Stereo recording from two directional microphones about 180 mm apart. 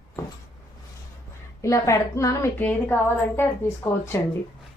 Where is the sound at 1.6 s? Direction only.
15° left (ahead or behind).